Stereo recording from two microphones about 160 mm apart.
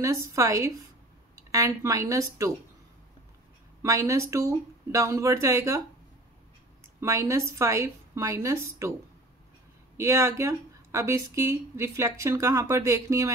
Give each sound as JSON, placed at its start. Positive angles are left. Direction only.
{"t": 0.0, "sound": "speech", "side_deg": -20}
{"t": 3.8, "sound": "speech", "side_deg": -20}
{"t": 7.0, "sound": "speech", "side_deg": -20}
{"t": 9.9, "sound": "a woman's voice", "side_deg": -20}